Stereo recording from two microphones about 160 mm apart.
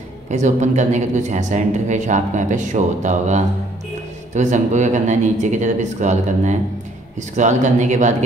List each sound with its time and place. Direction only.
0.3 s speech: 50° right (ahead or behind)